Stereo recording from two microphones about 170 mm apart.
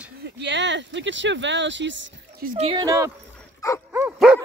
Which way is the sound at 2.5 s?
35° right (ahead or behind).